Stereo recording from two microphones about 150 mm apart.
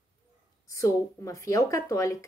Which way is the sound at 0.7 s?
20° left (ahead or behind).